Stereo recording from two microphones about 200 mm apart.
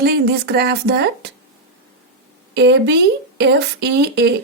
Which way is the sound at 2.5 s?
60° right (ahead or behind).